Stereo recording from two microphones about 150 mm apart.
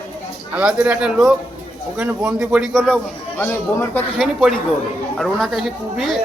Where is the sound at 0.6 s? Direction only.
5° right (ahead or behind).